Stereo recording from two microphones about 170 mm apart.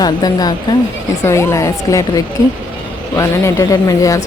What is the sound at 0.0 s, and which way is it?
A woman's voice, 25° left (ahead or behind).